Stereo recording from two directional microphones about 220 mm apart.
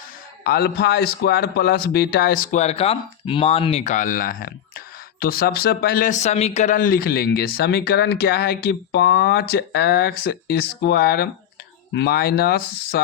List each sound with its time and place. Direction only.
0.4 s speech: 45° left (ahead or behind)